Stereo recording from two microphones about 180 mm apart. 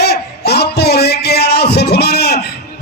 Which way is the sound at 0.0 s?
65° left (ahead or behind).